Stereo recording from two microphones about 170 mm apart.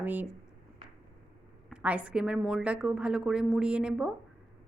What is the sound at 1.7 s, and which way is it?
Speech, 5° right (ahead or behind).